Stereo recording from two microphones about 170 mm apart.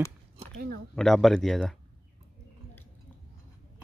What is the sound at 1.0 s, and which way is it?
Speech, centre (ahead or behind).